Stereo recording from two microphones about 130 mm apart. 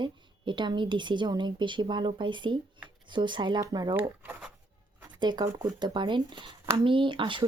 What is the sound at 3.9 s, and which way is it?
Speech, 15° right (ahead or behind).